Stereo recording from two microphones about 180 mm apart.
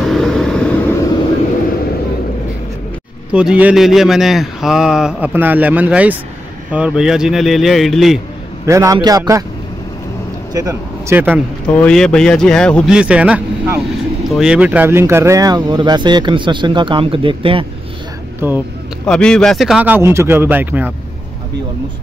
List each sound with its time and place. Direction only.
0.1 s vehicle: centre (ahead or behind)
3.3 s a man's voice: 5° right (ahead or behind)
8.6 s speech: 15° right (ahead or behind)
10.5 s speech: 15° right (ahead or behind)
11.6 s a man's voice: 5° left (ahead or behind)
12.9 s speech: 5° right (ahead or behind); by 17.6 s 30° right (ahead or behind)
18.4 s speech: 15° right (ahead or behind)
19.0 s speech: 5° left (ahead or behind)